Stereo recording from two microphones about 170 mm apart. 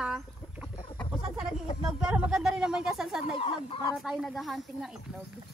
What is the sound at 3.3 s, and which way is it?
Speech, 35° left (ahead or behind).